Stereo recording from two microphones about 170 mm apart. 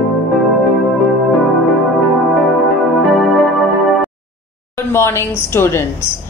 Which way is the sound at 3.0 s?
Centre (ahead or behind).